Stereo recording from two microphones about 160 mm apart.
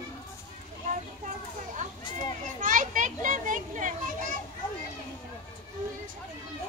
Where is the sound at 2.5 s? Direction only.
55° right (ahead or behind).